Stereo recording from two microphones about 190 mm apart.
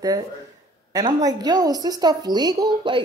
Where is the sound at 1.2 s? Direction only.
20° right (ahead or behind).